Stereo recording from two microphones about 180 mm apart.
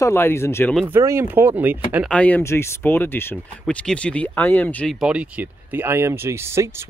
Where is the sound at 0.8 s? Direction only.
15° right (ahead or behind).